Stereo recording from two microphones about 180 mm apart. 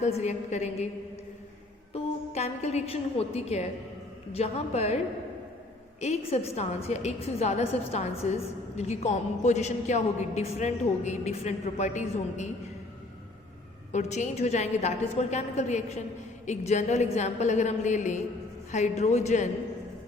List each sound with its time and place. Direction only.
0.0 s a woman's voice: 40° left (ahead or behind)
1.9 s a woman's voice: 35° left (ahead or behind)
6.0 s a woman's voice: 35° left (ahead or behind)
13.9 s a woman's voice: 40° left (ahead or behind)